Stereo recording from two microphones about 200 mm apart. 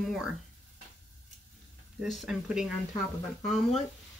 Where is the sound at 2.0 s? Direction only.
Centre (ahead or behind).